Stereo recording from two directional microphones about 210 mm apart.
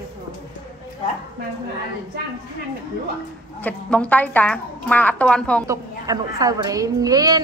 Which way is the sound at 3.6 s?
5° left (ahead or behind).